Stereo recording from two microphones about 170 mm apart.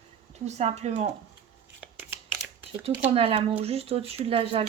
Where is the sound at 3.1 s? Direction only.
35° right (ahead or behind).